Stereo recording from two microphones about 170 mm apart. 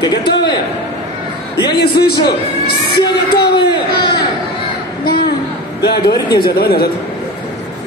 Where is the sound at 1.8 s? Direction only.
65° left (ahead or behind).